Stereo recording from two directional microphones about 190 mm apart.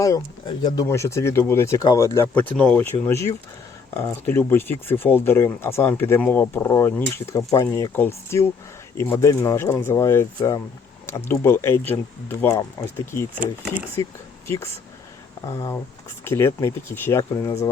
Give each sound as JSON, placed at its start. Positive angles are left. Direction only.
{"t": 0.0, "sound": "speech", "side_deg": 20}
{"t": 13.6, "sound": "speech", "side_deg": -5}
{"t": 14.4, "sound": "speech", "side_deg": 15}